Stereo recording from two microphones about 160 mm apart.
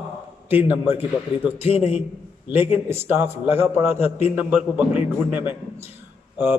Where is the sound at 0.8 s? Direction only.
10° right (ahead or behind).